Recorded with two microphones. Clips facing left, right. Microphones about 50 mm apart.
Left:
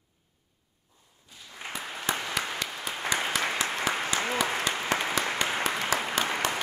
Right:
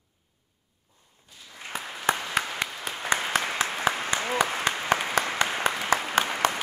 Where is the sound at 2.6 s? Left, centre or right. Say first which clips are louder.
Right 3 dB; right.